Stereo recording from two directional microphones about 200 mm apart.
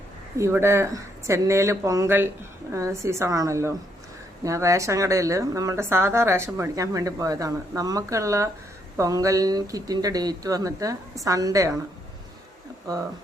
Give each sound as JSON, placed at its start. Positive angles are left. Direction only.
{"t": 0.3, "sound": "a woman's voice", "side_deg": -15}